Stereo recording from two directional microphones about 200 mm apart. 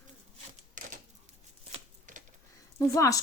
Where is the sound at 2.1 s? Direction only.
40° right (ahead or behind).